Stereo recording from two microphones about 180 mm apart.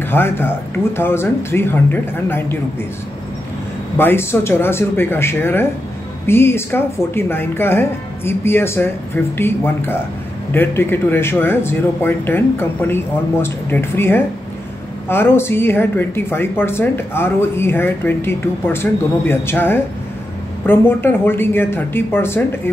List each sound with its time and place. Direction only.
0.0 s a woman's voice: 10° left (ahead or behind)
4.0 s a woman's voice: 15° left (ahead or behind)